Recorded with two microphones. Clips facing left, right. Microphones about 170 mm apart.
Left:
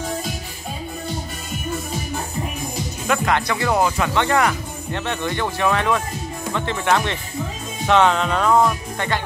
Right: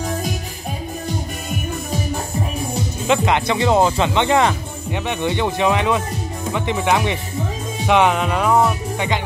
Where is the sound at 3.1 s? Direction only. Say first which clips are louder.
Right 3 dB; 20° right (ahead or behind).